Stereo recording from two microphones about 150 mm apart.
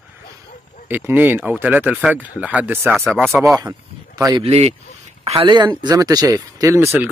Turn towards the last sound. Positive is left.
turn(degrees=-15)  # may be behind; listen again after turning